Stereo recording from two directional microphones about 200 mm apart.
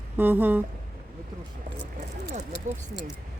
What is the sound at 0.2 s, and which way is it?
Speech, 10° right (ahead or behind).